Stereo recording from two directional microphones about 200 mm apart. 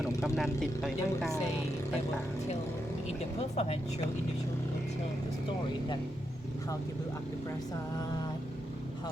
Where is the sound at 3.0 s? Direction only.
30° left (ahead or behind).